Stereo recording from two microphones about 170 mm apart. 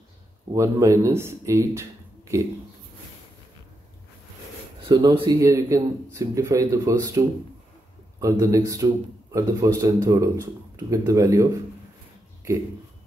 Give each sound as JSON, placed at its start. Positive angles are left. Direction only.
{"t": 0.5, "sound": "a man's voice", "side_deg": -15}
{"t": 4.8, "sound": "a man's voice", "side_deg": -25}